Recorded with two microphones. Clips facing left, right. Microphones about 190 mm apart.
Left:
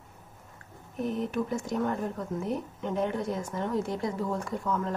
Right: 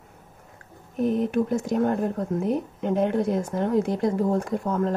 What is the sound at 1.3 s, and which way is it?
Speech, 60° right (ahead or behind).